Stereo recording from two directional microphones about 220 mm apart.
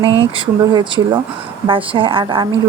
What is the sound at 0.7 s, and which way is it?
Speech, 20° right (ahead or behind).